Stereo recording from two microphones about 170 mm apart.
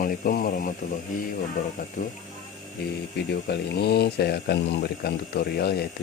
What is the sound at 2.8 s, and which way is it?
Speech, 70° left (ahead or behind).